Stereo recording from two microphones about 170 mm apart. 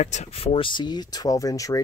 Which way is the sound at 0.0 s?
40° left (ahead or behind).